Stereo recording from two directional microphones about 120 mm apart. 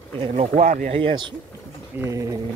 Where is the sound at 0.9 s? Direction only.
45° right (ahead or behind).